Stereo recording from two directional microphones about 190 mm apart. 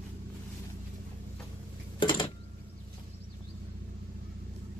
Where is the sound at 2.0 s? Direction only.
25° left (ahead or behind).